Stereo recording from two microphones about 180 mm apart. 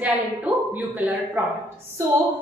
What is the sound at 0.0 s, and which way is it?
Speech, 10° right (ahead or behind).